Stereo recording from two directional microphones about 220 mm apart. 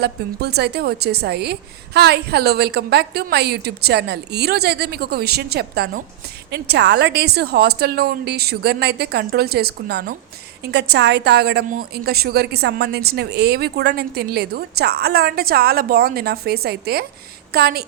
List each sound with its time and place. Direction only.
0.0 s a woman's voice: 45° right (ahead or behind)